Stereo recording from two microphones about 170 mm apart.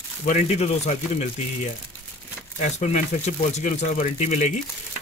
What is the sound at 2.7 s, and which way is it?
Speech, 45° left (ahead or behind).